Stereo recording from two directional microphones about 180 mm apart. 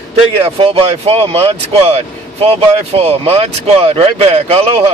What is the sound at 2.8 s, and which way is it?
Speech, 35° right (ahead or behind).